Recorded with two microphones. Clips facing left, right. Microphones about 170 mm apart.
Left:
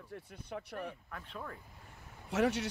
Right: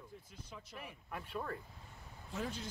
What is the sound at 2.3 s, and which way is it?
Speech, 75° left (ahead or behind).